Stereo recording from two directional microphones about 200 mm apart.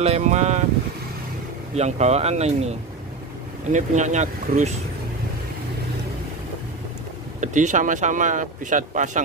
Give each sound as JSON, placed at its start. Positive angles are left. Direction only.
{"t": 0.0, "sound": "speech", "side_deg": -35}
{"t": 1.8, "sound": "speech", "side_deg": -35}
{"t": 3.7, "sound": "speech", "side_deg": -35}
{"t": 7.3, "sound": "speech", "side_deg": -40}